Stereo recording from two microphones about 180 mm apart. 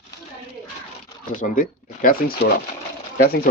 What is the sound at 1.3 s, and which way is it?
Speech, 45° left (ahead or behind).